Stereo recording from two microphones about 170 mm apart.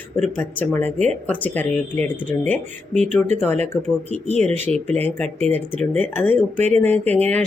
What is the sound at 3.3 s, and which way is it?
Speech, 10° left (ahead or behind).